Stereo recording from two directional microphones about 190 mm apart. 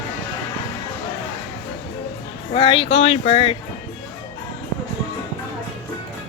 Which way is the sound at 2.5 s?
30° left (ahead or behind).